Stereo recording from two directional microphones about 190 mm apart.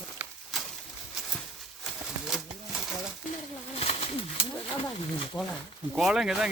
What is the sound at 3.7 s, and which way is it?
Pigeon, 30° left (ahead or behind).